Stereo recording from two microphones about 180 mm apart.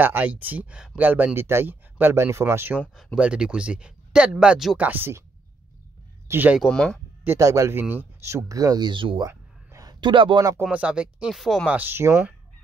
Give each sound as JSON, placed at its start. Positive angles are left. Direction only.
{"t": 0.0, "sound": "speech", "side_deg": -10}
{"t": 2.8, "sound": "speech", "side_deg": 5}
{"t": 3.2, "sound": "speech", "side_deg": -5}
{"t": 6.2, "sound": "speech", "side_deg": -10}
{"t": 6.7, "sound": "speech", "side_deg": 5}
{"t": 7.2, "sound": "speech", "side_deg": -15}
{"t": 9.3, "sound": "a sound", "side_deg": -20}
{"t": 10.6, "sound": "speech", "side_deg": -5}